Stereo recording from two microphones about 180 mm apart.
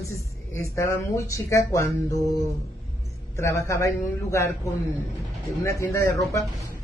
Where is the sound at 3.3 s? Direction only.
15° left (ahead or behind).